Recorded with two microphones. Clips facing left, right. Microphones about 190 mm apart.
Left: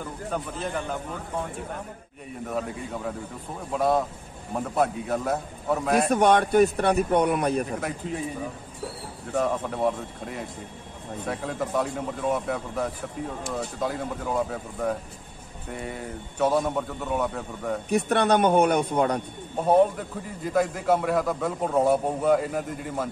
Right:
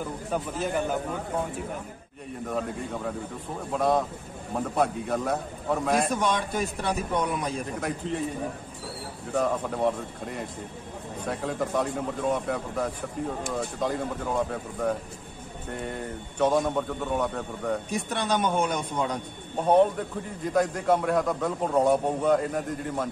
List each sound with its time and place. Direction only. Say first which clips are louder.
0.3 s speech: right 2 dB; 10° right (ahead or behind)
3.7 s a man's voice: left 1 dB; centre (ahead or behind)
6.0 s a man's voice: left 7 dB; 60° left (ahead or behind)
7.6 s a man's voice: even; centre (ahead or behind)
9.3 s a man's voice: even; centre (ahead or behind)
17.8 s a man's voice: left 7 dB; 60° left (ahead or behind)
19.7 s a man's voice: left 1 dB; 5° left (ahead or behind)